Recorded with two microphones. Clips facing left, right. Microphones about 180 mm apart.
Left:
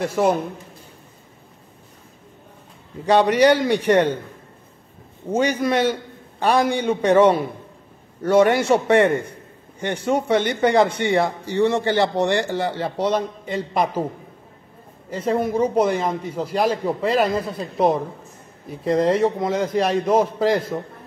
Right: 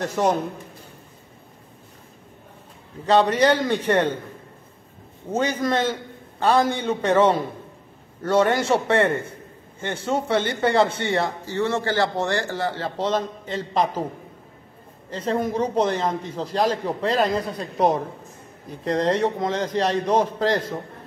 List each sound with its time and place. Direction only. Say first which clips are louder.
0.0 s a man's voice: left 2 dB; 10° left (ahead or behind)
3.1 s a man's voice: left 3 dB; 15° left (ahead or behind)
5.3 s a man's voice: left 3 dB; 10° left (ahead or behind)
15.0 s a man's voice: left 3 dB; 10° left (ahead or behind)